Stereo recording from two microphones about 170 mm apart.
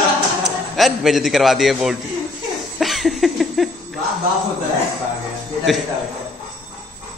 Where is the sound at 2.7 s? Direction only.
Centre (ahead or behind).